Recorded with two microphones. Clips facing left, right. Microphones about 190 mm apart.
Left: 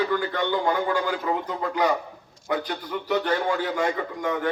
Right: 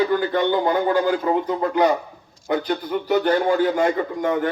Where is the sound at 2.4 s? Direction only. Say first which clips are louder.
Right 5 dB; 25° right (ahead or behind).